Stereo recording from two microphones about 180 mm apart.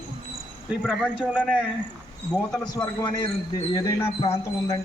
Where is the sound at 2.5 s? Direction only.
20° left (ahead or behind).